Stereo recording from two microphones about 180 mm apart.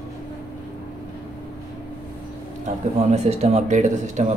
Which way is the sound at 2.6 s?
35° right (ahead or behind).